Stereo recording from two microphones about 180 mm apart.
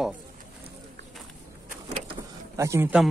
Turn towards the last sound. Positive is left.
turn(degrees=-10)  # may be behind; listen again after turning